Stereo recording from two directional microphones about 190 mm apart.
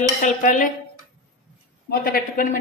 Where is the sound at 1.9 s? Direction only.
50° left (ahead or behind).